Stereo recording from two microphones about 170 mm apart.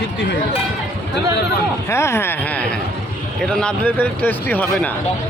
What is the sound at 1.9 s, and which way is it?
Speech, 15° left (ahead or behind).